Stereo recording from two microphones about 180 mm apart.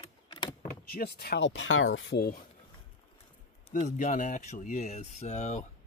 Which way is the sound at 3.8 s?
45° left (ahead or behind).